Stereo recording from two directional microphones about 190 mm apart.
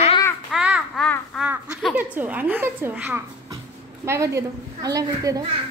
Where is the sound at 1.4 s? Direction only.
10° right (ahead or behind).